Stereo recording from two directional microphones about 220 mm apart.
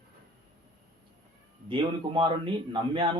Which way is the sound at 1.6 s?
20° right (ahead or behind).